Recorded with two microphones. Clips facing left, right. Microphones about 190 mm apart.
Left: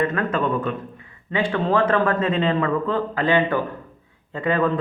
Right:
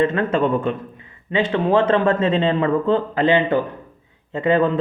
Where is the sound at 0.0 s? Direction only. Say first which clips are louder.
Right 4 dB; 25° right (ahead or behind).